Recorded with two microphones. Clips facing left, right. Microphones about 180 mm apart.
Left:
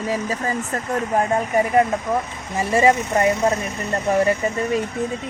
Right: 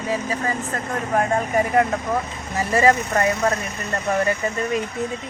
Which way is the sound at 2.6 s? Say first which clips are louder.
Left 1 dB; 25° left (ahead or behind).